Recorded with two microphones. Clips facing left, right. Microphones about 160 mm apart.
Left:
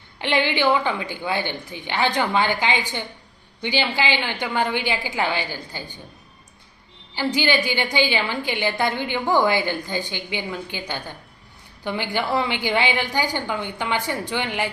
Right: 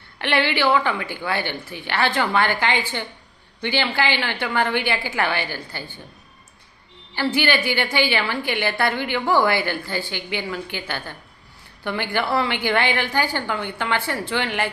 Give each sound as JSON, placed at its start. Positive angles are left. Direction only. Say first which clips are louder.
{"t": 0.2, "sound": "a woman's voice", "louder": "even", "side_deg": 15}
{"t": 7.2, "sound": "a woman's voice", "louder": "even", "side_deg": 15}